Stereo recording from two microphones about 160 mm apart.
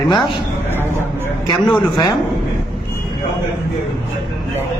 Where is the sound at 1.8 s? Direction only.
25° left (ahead or behind).